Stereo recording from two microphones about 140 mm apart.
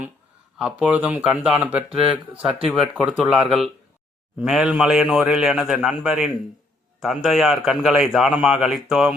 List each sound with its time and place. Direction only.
0.6 s a man's voice: 10° right (ahead or behind)